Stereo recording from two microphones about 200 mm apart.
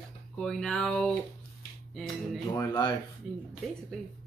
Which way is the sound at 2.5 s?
15° left (ahead or behind).